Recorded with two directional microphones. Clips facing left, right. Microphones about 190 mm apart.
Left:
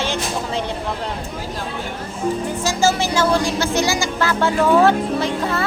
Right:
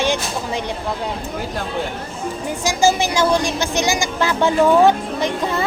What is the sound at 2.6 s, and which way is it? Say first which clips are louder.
Speech: right 3 dB; 15° right (ahead or behind).